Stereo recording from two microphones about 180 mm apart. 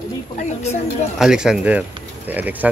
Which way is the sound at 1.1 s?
5° right (ahead or behind).